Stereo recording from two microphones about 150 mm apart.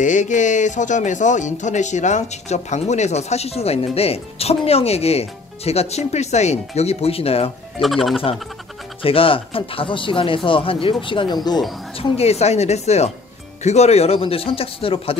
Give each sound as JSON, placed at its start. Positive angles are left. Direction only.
{"t": 0.0, "sound": "speech", "side_deg": 55}
{"t": 7.8, "sound": "speech", "side_deg": 0}
{"t": 9.0, "sound": "speech", "side_deg": 35}